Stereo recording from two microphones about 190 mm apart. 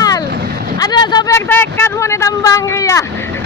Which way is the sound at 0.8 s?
20° left (ahead or behind).